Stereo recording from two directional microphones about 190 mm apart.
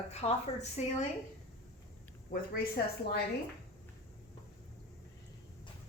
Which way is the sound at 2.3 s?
50° left (ahead or behind).